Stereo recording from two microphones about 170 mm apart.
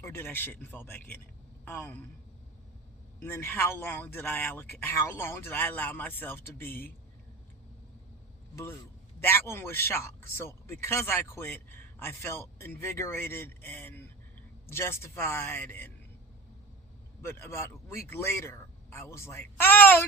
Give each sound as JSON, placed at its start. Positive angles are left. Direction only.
{"t": 0.0, "sound": "speech", "side_deg": 15}
{"t": 3.2, "sound": "speech", "side_deg": 15}
{"t": 9.2, "sound": "speech", "side_deg": 15}
{"t": 17.2, "sound": "speech", "side_deg": 15}